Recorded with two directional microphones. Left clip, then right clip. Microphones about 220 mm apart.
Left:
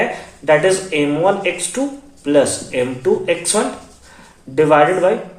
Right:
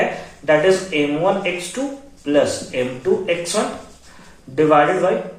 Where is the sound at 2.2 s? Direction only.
50° left (ahead or behind).